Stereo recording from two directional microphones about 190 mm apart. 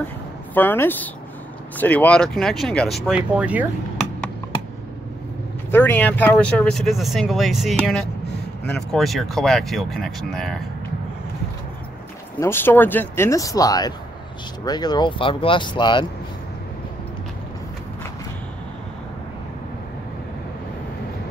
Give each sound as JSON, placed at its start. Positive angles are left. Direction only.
{"t": 0.6, "sound": "speech", "side_deg": 10}
{"t": 5.7, "sound": "speech", "side_deg": 10}
{"t": 12.4, "sound": "speech", "side_deg": 10}